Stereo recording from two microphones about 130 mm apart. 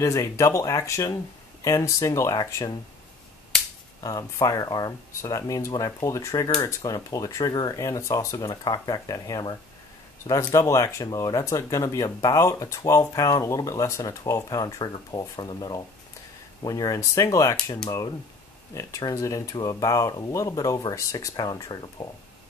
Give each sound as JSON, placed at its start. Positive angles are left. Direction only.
{"t": 0.0, "sound": "speech", "side_deg": 25}
{"t": 4.0, "sound": "speech", "side_deg": 30}